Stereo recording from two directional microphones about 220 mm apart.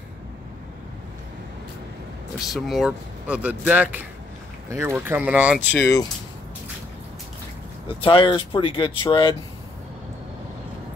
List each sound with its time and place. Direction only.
2.3 s speech: centre (ahead or behind)
5.7 s speech: 10° left (ahead or behind)
8.0 s speech: 25° left (ahead or behind)